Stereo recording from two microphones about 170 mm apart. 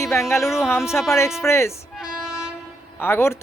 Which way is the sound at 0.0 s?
15° left (ahead or behind).